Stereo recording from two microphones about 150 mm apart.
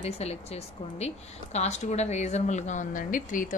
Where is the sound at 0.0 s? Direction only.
45° left (ahead or behind).